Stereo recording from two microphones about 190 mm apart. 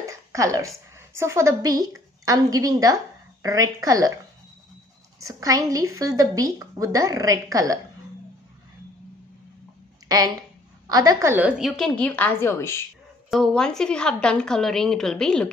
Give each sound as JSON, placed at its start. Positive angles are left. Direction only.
{"t": 0.0, "sound": "a woman's voice", "side_deg": -15}
{"t": 5.2, "sound": "a woman's voice", "side_deg": -15}
{"t": 10.0, "sound": "a woman's voice", "side_deg": -20}
{"t": 13.3, "sound": "a woman's voice", "side_deg": 0}